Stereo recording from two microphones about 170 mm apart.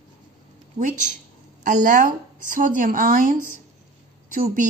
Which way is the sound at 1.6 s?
50° right (ahead or behind).